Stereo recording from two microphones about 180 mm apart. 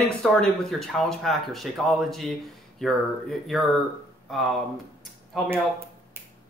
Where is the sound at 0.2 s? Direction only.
5° left (ahead or behind).